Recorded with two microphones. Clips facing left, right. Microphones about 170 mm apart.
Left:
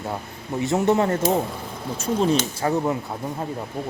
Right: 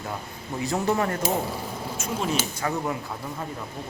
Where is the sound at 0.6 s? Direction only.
25° left (ahead or behind).